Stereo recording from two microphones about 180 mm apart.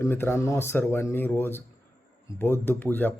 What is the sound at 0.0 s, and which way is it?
Mantra, 15° left (ahead or behind).